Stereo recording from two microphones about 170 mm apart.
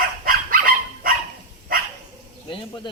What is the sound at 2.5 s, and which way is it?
Speech, 30° left (ahead or behind).